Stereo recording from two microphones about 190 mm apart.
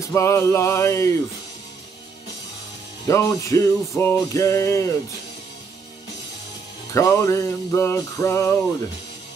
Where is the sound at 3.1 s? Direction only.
15° left (ahead or behind).